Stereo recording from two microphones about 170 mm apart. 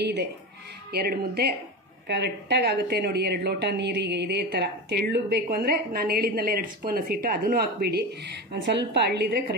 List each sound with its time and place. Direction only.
0.0 s speech: 85° right
0.9 s a woman's voice: 65° right (ahead or behind)
2.0 s a woman's voice: 85° right